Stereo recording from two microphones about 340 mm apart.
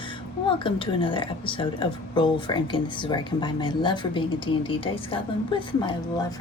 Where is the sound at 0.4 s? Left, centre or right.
Centre.